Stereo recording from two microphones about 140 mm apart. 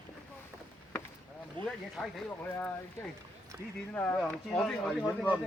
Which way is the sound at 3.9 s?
10° left (ahead or behind).